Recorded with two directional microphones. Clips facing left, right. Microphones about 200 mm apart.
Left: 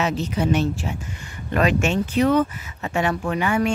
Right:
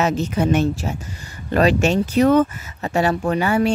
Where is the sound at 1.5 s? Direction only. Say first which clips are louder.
Right 4 dB; 35° right (ahead or behind).